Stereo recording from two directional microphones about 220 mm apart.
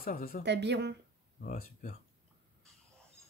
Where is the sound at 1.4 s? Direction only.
35° left (ahead or behind).